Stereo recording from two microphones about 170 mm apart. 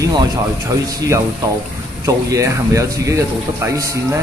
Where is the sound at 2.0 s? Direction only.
20° right (ahead or behind).